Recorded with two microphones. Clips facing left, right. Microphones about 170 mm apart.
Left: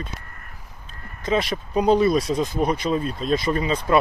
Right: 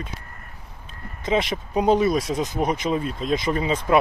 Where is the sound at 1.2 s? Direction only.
20° right (ahead or behind).